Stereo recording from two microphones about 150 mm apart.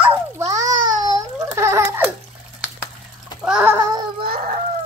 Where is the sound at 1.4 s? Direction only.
20° right (ahead or behind).